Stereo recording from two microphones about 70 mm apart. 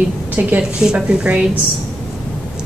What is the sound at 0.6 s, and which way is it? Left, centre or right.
Speech, centre.